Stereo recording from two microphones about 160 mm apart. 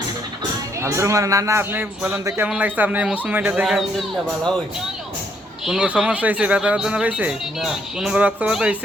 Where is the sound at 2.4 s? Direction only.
10° right (ahead or behind).